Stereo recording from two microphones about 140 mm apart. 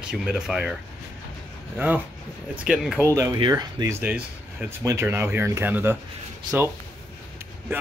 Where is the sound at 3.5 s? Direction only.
25° right (ahead or behind).